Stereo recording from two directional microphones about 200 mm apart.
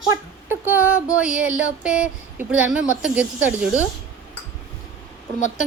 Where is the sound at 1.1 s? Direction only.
5° right (ahead or behind).